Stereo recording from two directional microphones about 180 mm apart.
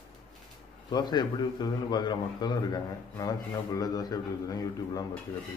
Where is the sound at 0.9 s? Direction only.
25° left (ahead or behind).